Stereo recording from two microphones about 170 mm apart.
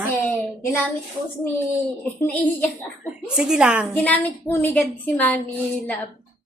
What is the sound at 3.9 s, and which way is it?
A woman's voice, 10° left (ahead or behind).